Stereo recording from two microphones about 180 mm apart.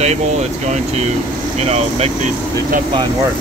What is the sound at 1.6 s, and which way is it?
Speech, 35° right (ahead or behind).